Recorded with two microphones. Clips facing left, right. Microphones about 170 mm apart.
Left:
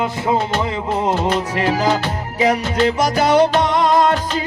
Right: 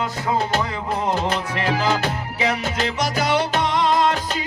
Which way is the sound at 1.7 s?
35° left (ahead or behind).